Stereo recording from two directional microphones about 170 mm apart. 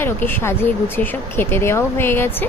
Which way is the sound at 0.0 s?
10° left (ahead or behind).